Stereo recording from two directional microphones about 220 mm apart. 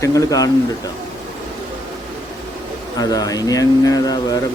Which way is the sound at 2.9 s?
15° left (ahead or behind).